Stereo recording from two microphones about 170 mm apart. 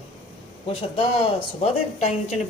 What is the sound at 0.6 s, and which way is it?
A man's voice, 35° left (ahead or behind).